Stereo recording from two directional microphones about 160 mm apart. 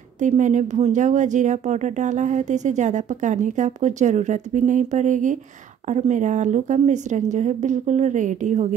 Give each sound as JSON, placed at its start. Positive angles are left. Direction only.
{"t": 0.2, "sound": "speech", "side_deg": -50}